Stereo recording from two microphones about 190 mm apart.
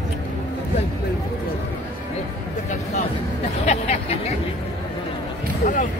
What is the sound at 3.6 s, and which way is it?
Hubbub, 35° left (ahead or behind).